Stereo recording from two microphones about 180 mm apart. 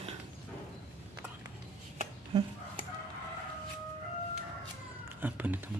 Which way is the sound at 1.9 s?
30° right (ahead or behind).